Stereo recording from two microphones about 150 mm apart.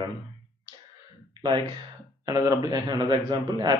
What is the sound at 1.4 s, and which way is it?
Speech, 35° right (ahead or behind).